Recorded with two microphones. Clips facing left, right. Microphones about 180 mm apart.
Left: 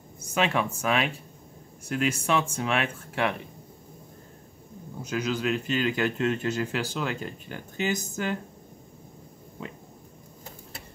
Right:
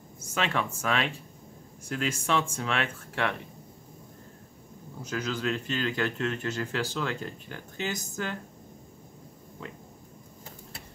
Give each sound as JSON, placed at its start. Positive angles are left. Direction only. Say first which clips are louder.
{"t": 0.3, "sound": "speech", "louder": "left 4 dB", "side_deg": 15}
{"t": 5.1, "sound": "speech", "louder": "left 3 dB", "side_deg": 15}